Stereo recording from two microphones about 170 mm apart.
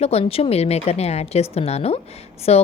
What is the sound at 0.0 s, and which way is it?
A woman's voice, 35° left (ahead or behind).